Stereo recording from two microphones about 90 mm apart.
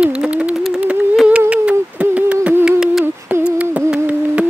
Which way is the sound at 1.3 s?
15° right (ahead or behind).